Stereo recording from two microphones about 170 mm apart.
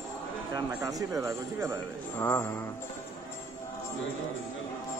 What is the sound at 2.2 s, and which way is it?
Speech, 15° left (ahead or behind).